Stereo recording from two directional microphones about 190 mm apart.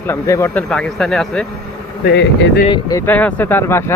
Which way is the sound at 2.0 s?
65° left (ahead or behind).